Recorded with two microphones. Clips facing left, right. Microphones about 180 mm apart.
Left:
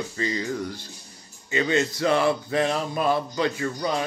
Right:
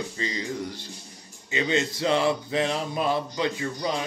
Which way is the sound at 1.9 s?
20° right (ahead or behind).